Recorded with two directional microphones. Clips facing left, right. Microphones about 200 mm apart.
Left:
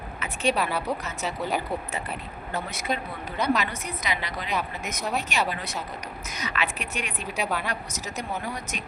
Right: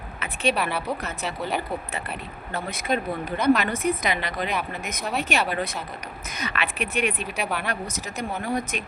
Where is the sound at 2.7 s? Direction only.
55° right (ahead or behind).